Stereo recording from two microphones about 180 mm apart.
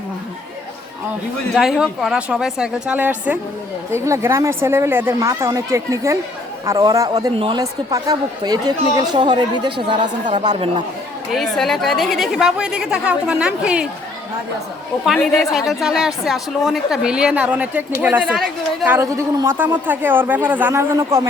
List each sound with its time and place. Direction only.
1.5 s a woman's voice: centre (ahead or behind); by 10.1 s 25° right (ahead or behind)
10.5 s speech: 40° right (ahead or behind)
11.3 s a woman's voice: centre (ahead or behind)
15.0 s a woman's voice: centre (ahead or behind)
18.9 s a man's voice: 15° right (ahead or behind)